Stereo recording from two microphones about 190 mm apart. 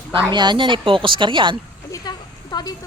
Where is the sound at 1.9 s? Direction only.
20° left (ahead or behind).